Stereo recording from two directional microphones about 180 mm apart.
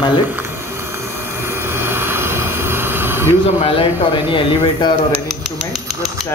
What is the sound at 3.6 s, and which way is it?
Speech, 30° left (ahead or behind).